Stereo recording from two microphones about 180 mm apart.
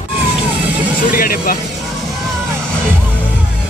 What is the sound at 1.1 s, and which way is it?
Vehicle, 55° left (ahead or behind).